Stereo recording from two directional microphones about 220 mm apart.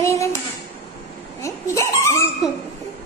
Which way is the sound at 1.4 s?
15° left (ahead or behind).